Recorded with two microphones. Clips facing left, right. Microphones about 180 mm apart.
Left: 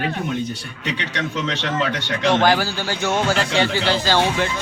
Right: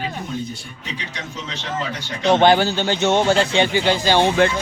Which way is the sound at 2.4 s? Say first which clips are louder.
Right 4 dB; 25° right (ahead or behind).